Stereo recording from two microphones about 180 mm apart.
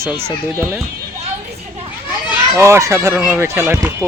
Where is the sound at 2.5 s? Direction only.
15° right (ahead or behind).